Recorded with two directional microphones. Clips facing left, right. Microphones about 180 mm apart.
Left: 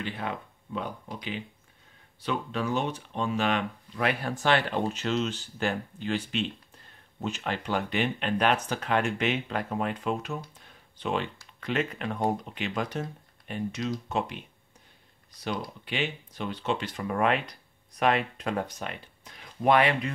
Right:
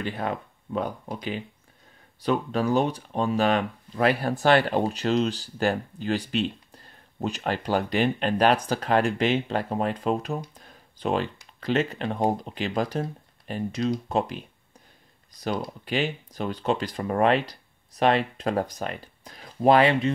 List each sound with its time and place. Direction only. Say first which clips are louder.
0.0 s speech: right 4 dB; 40° right (ahead or behind)
10.6 s a sound: right 5 dB; 40° right (ahead or behind)
11.6 s speech: right 5 dB; 30° right (ahead or behind)
15.8 s speech: right 5 dB; 40° right (ahead or behind)